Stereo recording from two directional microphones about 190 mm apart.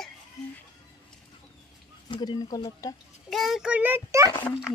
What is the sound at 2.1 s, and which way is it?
Speech, 25° left (ahead or behind).